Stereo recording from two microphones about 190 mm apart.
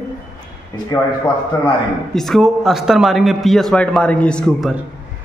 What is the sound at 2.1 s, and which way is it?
A man's voice, centre (ahead or behind).